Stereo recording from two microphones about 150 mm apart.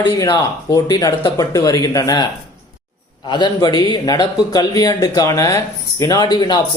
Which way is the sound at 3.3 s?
30° left (ahead or behind).